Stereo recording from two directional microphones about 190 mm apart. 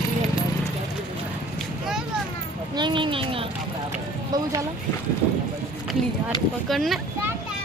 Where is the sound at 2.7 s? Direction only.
25° right (ahead or behind).